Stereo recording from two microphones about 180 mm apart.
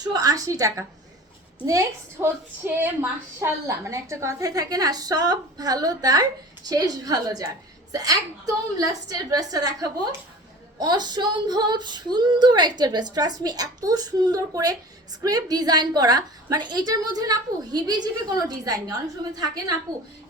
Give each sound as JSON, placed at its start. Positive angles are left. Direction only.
{"t": 0.1, "sound": "a woman's voice", "side_deg": -20}